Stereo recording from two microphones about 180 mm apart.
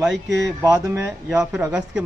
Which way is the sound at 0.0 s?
5° right (ahead or behind).